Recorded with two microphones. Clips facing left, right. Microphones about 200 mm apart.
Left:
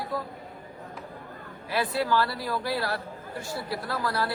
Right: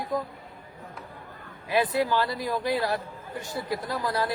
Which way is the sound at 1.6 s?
15° right (ahead or behind).